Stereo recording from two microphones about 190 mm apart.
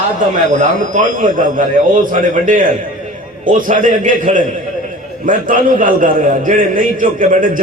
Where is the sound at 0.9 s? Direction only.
45° right (ahead or behind).